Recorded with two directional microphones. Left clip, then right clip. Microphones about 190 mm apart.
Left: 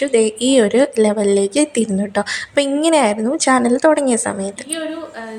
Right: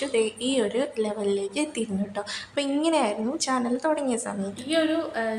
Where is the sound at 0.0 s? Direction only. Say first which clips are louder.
Left 10 dB; 30° left (ahead or behind).